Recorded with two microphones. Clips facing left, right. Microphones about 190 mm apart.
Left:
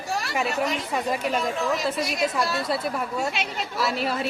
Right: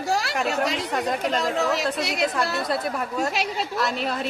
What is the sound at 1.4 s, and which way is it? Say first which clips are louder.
Speech: right 2 dB; 80° right.